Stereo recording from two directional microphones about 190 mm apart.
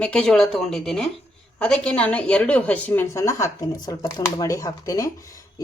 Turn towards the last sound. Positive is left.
turn(degrees=15)  # may be behind; listen again after turning